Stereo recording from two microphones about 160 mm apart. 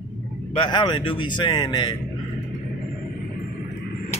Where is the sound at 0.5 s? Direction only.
30° left (ahead or behind).